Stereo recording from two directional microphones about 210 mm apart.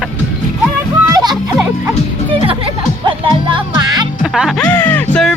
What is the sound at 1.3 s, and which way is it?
Speech, centre (ahead or behind).